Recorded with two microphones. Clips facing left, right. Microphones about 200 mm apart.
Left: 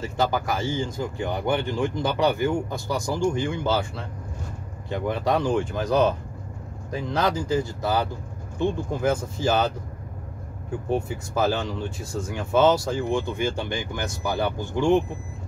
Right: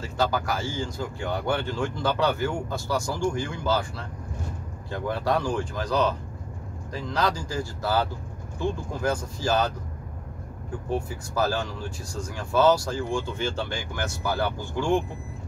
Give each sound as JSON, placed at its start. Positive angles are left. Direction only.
{"t": 0.0, "sound": "speech", "side_deg": 20}
{"t": 11.3, "sound": "speech", "side_deg": 20}